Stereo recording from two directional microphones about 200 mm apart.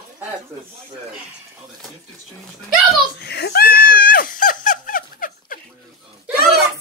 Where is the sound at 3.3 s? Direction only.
55° left (ahead or behind).